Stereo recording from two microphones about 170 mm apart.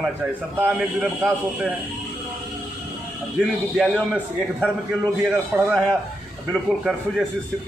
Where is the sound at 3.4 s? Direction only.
Centre (ahead or behind).